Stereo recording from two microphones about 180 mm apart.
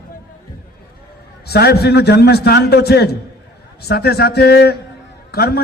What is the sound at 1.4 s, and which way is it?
A man's voice, 65° left (ahead or behind).